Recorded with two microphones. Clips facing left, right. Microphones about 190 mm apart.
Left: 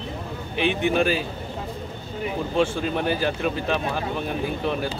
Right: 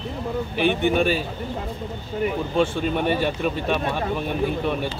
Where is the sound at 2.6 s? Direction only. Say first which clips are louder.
Right 1 dB; centre (ahead or behind).